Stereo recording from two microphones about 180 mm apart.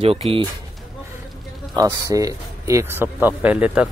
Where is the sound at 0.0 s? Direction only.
35° right (ahead or behind).